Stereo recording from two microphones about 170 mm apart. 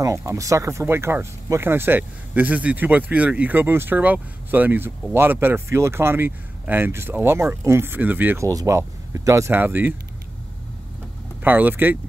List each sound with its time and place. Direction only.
0.0 s speech: 20° right (ahead or behind)
11.4 s speech: 10° right (ahead or behind)